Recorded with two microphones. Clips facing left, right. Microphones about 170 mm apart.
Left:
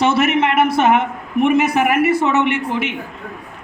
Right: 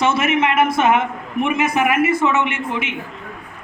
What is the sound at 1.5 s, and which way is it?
Speech, 65° left (ahead or behind).